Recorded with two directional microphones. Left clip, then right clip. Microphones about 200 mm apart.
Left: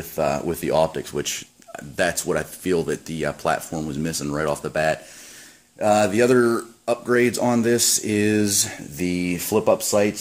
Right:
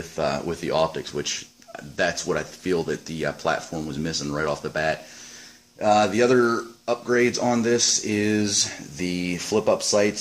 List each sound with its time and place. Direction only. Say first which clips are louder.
0.1 s speech: left 3 dB; 50° left (ahead or behind)